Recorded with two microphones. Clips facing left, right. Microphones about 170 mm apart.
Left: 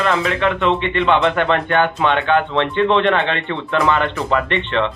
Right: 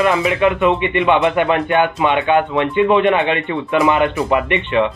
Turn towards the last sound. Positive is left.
turn(degrees=-15)  # may be behind; listen again after turning